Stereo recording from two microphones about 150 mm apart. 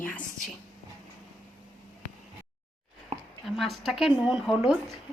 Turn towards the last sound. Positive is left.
turn(degrees=0)  # may be behind; listen again after turning